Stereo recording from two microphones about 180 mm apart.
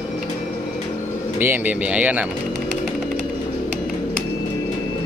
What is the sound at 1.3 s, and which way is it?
Speech, 10° right (ahead or behind).